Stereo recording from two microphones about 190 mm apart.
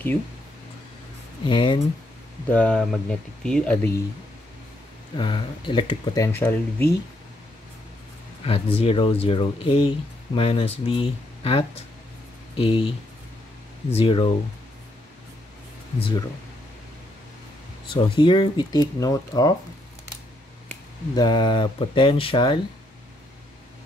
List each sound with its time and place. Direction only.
1.4 s speech: 25° left (ahead or behind)
2.5 s speech: 5° left (ahead or behind)
5.1 s speech: 25° left (ahead or behind)
8.5 s speech: 30° left (ahead or behind)
17.8 s speech: 25° left (ahead or behind)
21.1 s speech: 20° left (ahead or behind)